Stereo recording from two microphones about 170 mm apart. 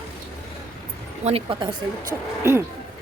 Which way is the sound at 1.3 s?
30° right (ahead or behind).